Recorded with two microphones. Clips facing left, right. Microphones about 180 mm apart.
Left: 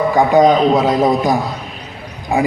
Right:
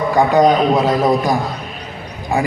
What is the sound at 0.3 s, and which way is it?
Speech, 5° right (ahead or behind).